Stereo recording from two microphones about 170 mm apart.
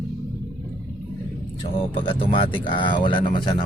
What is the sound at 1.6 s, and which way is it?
Speech, 30° left (ahead or behind).